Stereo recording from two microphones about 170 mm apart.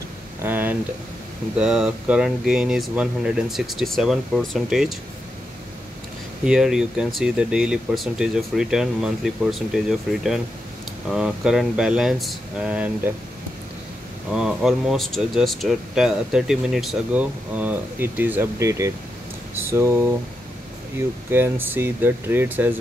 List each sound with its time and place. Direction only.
0.4 s a sound: 10° right (ahead or behind)
1.6 s speech: 5° right (ahead or behind)
6.4 s speech: 5° right (ahead or behind)
14.3 s speech: 5° right (ahead or behind)
21.3 s speech: 10° right (ahead or behind)